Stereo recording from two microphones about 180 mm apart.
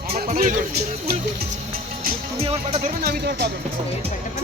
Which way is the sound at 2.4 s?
35° right (ahead or behind).